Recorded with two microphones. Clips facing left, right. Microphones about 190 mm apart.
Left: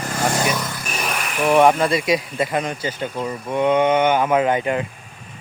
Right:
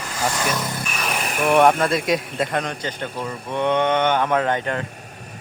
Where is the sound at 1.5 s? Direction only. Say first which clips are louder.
Left 1 dB; centre (ahead or behind).